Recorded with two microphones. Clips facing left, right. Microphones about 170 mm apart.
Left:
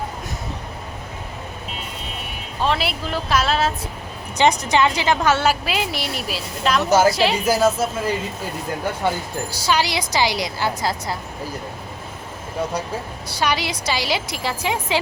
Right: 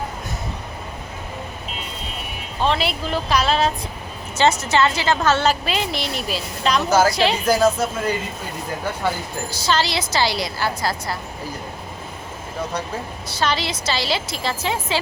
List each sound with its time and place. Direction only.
2.6 s speech: centre (ahead or behind)
4.4 s a woman's voice: 15° left (ahead or behind)
9.5 s a woman's voice: 10° left (ahead or behind)
13.2 s a woman's voice: 10° left (ahead or behind)